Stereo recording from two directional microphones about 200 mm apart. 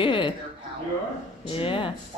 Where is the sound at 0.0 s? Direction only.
25° left (ahead or behind).